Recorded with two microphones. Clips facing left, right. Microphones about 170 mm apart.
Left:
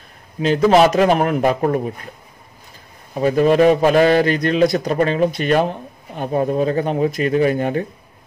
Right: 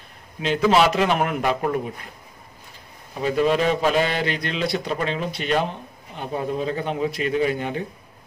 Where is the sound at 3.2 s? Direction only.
50° left (ahead or behind).